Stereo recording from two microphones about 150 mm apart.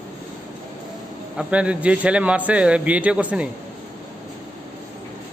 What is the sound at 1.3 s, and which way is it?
A man's voice, 10° right (ahead or behind).